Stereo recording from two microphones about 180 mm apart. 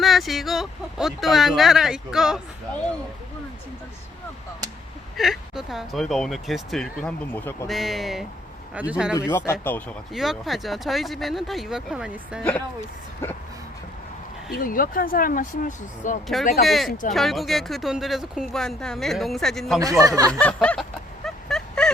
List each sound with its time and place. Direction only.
0.0 s speech: centre (ahead or behind)
5.1 s speech: centre (ahead or behind)
7.7 s speech: centre (ahead or behind)
9.1 s speech: 15° left (ahead or behind)
10.1 s speech: centre (ahead or behind)
12.4 s speech: 5° left (ahead or behind)
14.5 s speech: 50° left (ahead or behind)
16.2 s speech: centre (ahead or behind)
19.8 s speech: 20° right (ahead or behind)
20.4 s speech: 5° left (ahead or behind)
21.2 s a sound: 5° left (ahead or behind)